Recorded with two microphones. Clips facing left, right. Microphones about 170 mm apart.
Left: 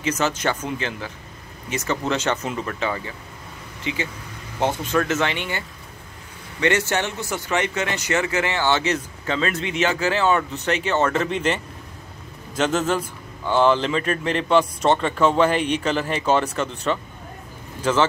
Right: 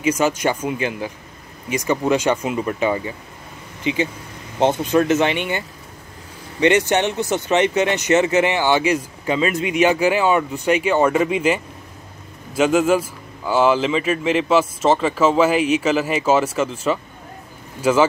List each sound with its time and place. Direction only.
0.0 s speech: 10° right (ahead or behind)
6.6 s a man's voice: 20° right (ahead or behind)